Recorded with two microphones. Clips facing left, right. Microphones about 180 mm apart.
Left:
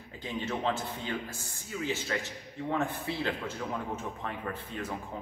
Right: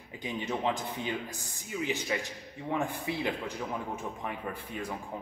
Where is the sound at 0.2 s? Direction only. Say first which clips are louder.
Right 1 dB; 15° right (ahead or behind).